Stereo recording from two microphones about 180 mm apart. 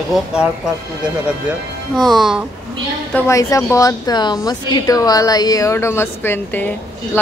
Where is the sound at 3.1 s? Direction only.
15° left (ahead or behind).